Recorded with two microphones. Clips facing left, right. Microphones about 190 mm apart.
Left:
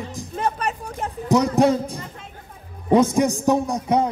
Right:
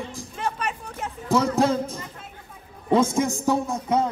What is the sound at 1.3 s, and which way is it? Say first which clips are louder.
Speech: left 4 dB; 15° left (ahead or behind).